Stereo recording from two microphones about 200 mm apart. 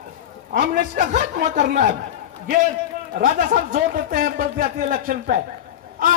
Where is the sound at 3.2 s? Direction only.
40° right (ahead or behind).